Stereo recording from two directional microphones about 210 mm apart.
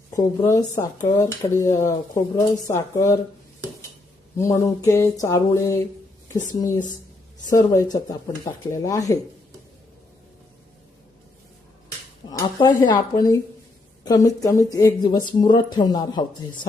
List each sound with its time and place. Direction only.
0.1 s speech: 15° left (ahead or behind)
4.4 s speech: 15° left (ahead or behind)
12.3 s speech: 20° left (ahead or behind)